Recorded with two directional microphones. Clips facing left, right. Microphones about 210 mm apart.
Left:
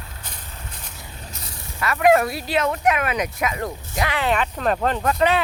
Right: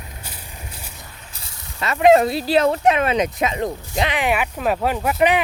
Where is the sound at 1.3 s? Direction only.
25° right (ahead or behind).